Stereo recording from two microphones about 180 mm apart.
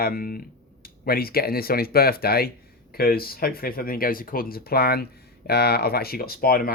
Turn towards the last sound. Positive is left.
turn(degrees=55)  # may be behind; listen again after turning